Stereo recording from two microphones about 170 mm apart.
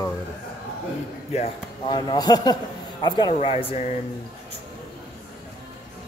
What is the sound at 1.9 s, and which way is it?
A man's voice, 25° left (ahead or behind).